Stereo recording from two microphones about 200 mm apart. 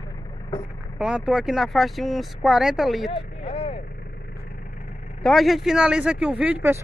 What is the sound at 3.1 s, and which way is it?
Vehicle, 25° left (ahead or behind).